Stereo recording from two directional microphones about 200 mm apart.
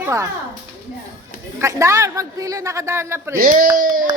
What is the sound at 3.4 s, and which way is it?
Speech, 45° right (ahead or behind).